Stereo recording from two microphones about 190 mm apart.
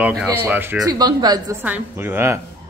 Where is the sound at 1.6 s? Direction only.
10° right (ahead or behind).